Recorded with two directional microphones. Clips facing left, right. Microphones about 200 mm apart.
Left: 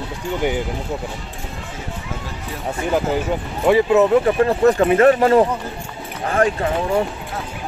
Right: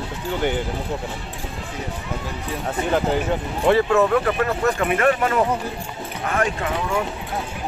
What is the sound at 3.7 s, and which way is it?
Speech, 15° left (ahead or behind).